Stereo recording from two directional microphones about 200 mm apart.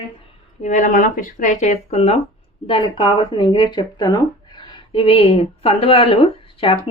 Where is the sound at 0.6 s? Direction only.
40° left (ahead or behind).